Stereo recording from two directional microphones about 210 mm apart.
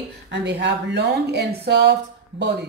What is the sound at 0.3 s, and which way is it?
A woman's voice, 55° right (ahead or behind).